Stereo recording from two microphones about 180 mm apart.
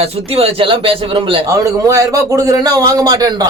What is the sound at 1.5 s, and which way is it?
A man's voice, 15° right (ahead or behind).